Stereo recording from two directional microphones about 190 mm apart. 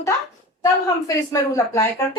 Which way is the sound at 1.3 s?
15° left (ahead or behind).